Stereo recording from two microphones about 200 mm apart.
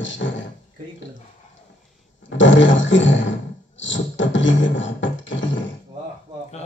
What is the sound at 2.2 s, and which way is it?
Speech, 70° left (ahead or behind).